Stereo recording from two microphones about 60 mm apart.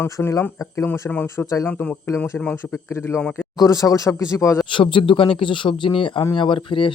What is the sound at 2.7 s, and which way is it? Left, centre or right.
Speech, left.